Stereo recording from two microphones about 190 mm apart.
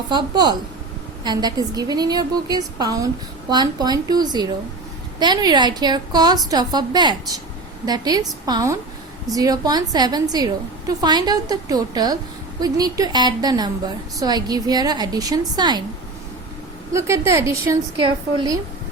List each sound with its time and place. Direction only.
0.1 s a woman's voice: 25° right (ahead or behind)
16.9 s a woman's voice: 15° right (ahead or behind)
17.9 s a woman's voice: 25° right (ahead or behind)